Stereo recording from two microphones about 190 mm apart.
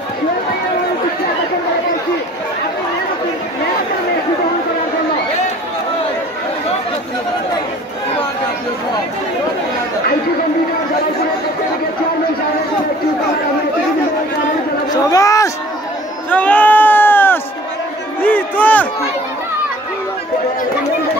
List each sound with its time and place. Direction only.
14.9 s chatter: 20° left (ahead or behind)
16.3 s sheep: 10° left (ahead or behind)
18.2 s music: 10° left (ahead or behind)